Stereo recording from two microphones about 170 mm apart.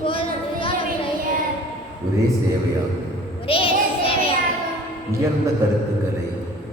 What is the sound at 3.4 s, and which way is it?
Child singing, 35° left (ahead or behind).